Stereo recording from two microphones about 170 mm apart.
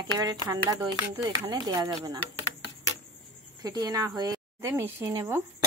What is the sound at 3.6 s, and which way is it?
Speech, 20° right (ahead or behind).